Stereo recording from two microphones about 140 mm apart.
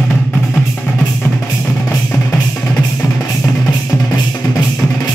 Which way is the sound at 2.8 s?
20° left (ahead or behind).